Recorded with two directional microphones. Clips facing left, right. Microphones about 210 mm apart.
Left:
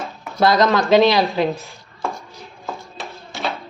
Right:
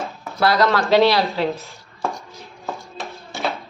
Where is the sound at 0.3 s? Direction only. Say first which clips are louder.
Left 2 dB; 20° left (ahead or behind).